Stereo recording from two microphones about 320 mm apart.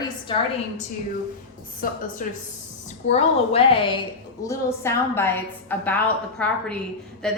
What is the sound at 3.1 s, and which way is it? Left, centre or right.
A woman's voice, centre.